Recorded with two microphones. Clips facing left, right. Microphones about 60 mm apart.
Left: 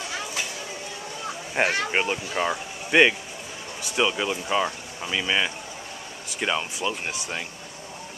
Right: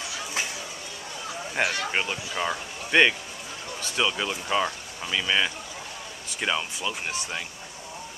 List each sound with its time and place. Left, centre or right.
1.6 s speech: left
1.9 s speech: centre
6.8 s speech: centre